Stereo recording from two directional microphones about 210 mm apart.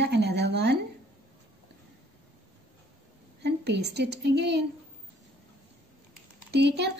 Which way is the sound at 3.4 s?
50° right (ahead or behind).